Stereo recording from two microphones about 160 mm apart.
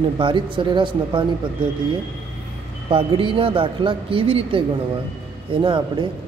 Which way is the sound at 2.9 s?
35° right (ahead or behind).